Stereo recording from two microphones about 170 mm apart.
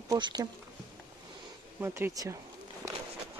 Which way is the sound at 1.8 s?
15° right (ahead or behind).